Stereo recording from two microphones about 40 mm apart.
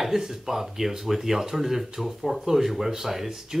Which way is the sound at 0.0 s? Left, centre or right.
Centre.